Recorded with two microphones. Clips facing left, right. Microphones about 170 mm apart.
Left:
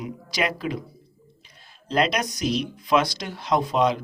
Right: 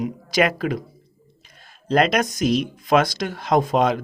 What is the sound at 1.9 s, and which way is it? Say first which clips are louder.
Speech: right 5 dB; 50° right (ahead or behind).